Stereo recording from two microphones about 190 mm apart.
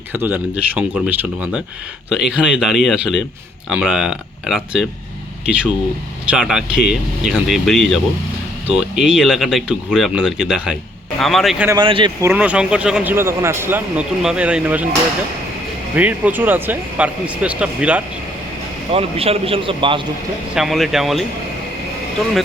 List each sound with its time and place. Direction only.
0.1 s speech: 10° right (ahead or behind)
6.3 s speech: 5° right (ahead or behind)
11.8 s speech: 25° right (ahead or behind)
12.3 s speech: 5° right (ahead or behind)
16.0 s speech: 10° right (ahead or behind)
18.9 s speech: 30° right (ahead or behind)
20.6 s speech: centre (ahead or behind)